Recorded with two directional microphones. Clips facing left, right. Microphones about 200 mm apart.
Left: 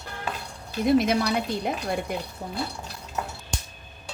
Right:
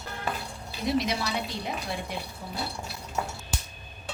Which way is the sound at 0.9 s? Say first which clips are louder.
Left 6 dB; 55° left (ahead or behind).